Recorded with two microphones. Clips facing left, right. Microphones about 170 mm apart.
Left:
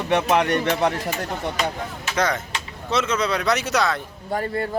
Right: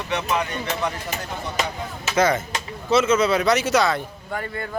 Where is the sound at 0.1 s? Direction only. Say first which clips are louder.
Left 6 dB; 60° left (ahead or behind).